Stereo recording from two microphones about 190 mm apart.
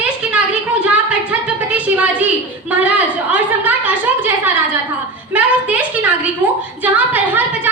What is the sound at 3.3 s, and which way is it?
Speech, 10° right (ahead or behind).